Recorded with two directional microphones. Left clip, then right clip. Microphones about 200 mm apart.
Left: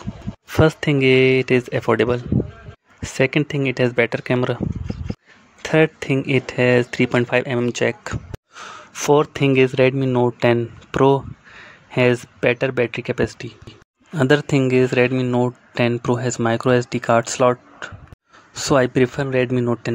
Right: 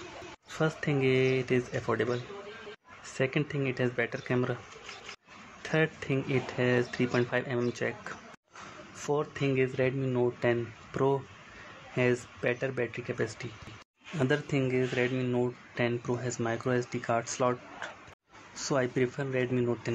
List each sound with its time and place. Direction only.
0.5 s speech: 50° left (ahead or behind)
5.6 s speech: 50° left (ahead or behind)